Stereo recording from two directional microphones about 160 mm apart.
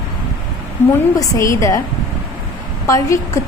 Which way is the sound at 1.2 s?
20° left (ahead or behind).